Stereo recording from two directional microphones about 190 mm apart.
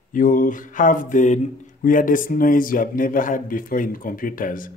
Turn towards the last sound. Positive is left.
turn(degrees=45)  # may be behind; listen again after turning